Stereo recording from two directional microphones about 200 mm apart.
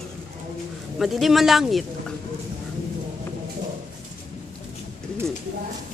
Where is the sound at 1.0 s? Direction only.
Centre (ahead or behind).